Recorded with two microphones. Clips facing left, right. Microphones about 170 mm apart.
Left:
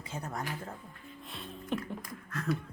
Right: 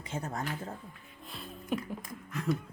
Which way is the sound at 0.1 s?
25° right (ahead or behind).